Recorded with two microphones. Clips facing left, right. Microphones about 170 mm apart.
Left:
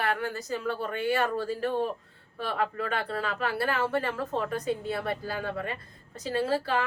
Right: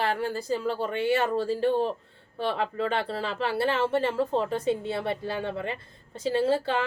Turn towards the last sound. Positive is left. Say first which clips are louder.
# right 3 dB
turn(degrees=-25)  # may be behind; listen again after turning